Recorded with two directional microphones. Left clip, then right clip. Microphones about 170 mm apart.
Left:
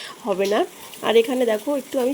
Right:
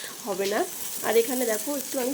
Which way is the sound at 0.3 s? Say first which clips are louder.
Left 6 dB; 50° left (ahead or behind).